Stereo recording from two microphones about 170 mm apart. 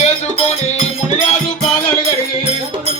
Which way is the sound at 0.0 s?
40° left (ahead or behind).